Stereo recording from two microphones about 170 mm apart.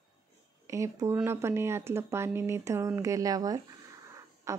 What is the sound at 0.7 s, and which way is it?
Speech, 20° right (ahead or behind).